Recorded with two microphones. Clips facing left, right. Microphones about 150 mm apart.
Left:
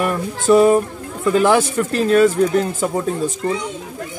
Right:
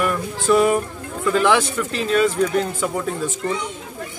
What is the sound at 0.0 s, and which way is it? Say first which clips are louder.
Speech: left 2 dB; 35° left (ahead or behind).